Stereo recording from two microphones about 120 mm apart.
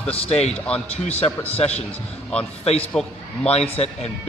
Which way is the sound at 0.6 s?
10° left (ahead or behind).